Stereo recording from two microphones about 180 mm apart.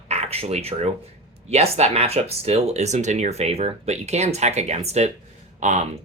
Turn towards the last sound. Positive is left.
turn(degrees=-40)  # may be behind; listen again after turning